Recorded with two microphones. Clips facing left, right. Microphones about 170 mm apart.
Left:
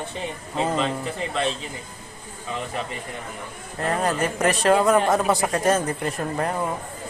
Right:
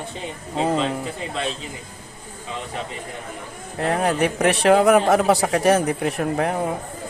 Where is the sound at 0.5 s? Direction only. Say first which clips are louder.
Right 3 dB; 35° right (ahead or behind).